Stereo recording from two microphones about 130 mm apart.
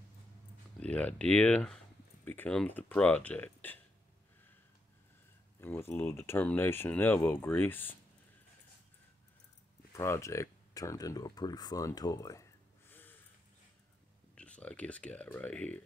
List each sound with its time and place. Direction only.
0.7 s speech: 10° left (ahead or behind)
5.6 s speech: 15° left (ahead or behind)
9.9 s speech: 20° left (ahead or behind)
14.3 s speech: 10° left (ahead or behind)